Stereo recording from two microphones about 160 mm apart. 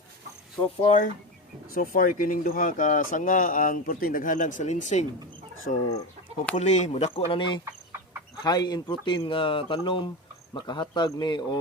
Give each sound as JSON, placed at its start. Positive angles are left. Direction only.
{"t": 0.8, "sound": "speech", "side_deg": 50}
{"t": 1.7, "sound": "a man's voice", "side_deg": 65}
{"t": 6.6, "sound": "a man's voice", "side_deg": 45}